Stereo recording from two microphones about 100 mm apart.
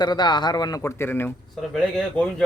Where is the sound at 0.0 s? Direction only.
45° left (ahead or behind).